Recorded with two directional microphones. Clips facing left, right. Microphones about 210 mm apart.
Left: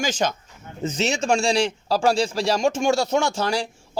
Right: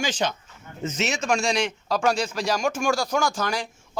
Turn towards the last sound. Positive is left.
turn(degrees=30)  # may be behind; listen again after turning